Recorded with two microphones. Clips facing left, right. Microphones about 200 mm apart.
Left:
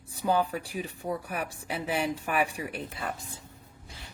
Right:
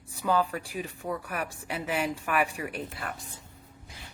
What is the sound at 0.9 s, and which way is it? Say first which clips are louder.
Speech: left 1 dB; 25° left (ahead or behind).